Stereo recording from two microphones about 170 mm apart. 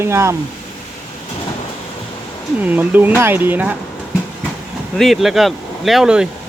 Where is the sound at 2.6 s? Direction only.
10° right (ahead or behind).